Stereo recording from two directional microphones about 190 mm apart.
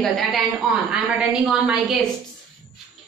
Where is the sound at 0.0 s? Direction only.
Centre (ahead or behind).